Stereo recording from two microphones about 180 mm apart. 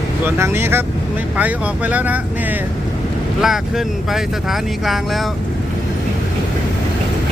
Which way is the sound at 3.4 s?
Centre (ahead or behind).